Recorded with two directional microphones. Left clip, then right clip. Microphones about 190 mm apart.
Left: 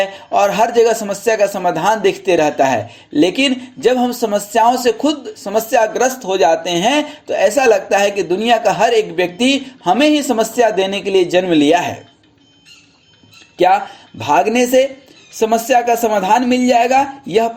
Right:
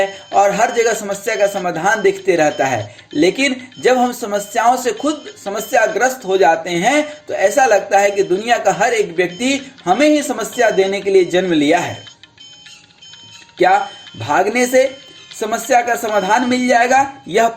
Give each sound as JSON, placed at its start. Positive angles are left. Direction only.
{"t": 0.0, "sound": "speech", "side_deg": 25}
{"t": 14.3, "sound": "speech", "side_deg": 40}
{"t": 15.4, "sound": "speech", "side_deg": 25}